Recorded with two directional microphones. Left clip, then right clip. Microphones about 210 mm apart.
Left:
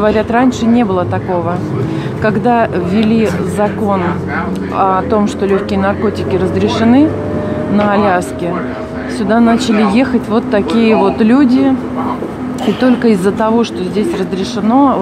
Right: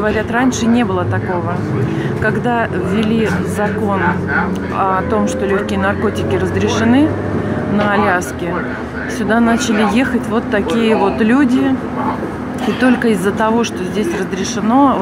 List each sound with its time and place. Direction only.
0.0 s speech: 20° left (ahead or behind)
2.2 s speech: 20° left (ahead or behind)
9.3 s speech: 15° left (ahead or behind)
13.0 s speech: 15° left (ahead or behind)